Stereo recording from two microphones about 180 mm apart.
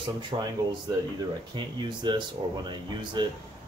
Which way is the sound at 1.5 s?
25° right (ahead or behind).